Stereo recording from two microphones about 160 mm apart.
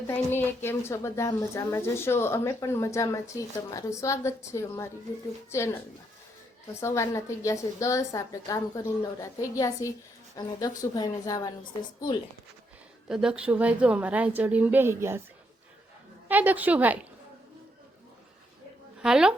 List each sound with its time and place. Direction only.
0.3 s a woman's voice: 15° left (ahead or behind)
6.7 s a woman's voice: 15° left (ahead or behind)
13.1 s a woman's voice: 5° right (ahead or behind)
16.3 s a woman's voice: 10° right (ahead or behind)
19.0 s speech: 5° right (ahead or behind)